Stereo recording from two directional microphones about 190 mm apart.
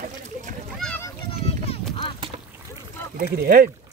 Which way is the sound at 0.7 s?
5° left (ahead or behind).